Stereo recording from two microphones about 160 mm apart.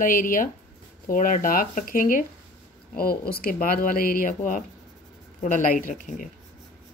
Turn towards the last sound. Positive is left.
turn(degrees=55)  # may be behind; listen again after turning